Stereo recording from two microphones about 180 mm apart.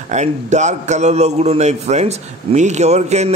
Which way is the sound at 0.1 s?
40° right (ahead or behind).